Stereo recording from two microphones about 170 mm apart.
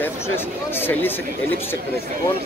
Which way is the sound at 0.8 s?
10° left (ahead or behind).